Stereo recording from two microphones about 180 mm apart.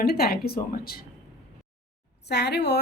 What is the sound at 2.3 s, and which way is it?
Speech, 65° left (ahead or behind).